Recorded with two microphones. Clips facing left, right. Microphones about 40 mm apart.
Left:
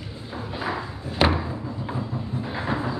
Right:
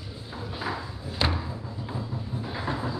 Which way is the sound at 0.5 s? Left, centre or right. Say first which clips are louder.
Left 4 dB; left.